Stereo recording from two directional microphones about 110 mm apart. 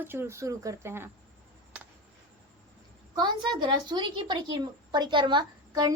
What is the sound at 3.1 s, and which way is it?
A woman's voice, 40° right (ahead or behind).